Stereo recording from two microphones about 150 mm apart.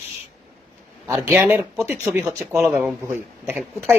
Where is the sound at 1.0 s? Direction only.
15° right (ahead or behind).